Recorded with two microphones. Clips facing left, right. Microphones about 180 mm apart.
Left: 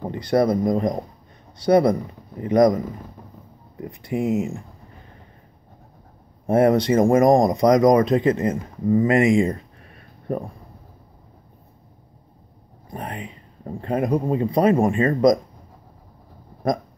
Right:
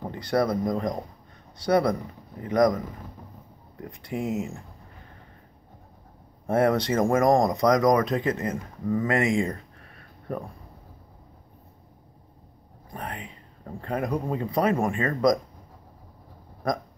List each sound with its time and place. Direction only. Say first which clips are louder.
0.1 s speech: left 5 dB; 20° left (ahead or behind)
3.8 s speech: left 6 dB; 10° left (ahead or behind)
6.4 s speech: left 5 dB; 15° left (ahead or behind)
12.9 s speech: left 4 dB; 20° left (ahead or behind)